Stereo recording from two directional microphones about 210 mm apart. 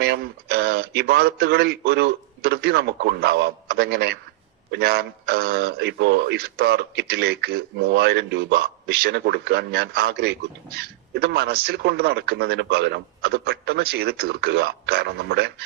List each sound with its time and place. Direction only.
0.0 s speech: 50° right (ahead or behind)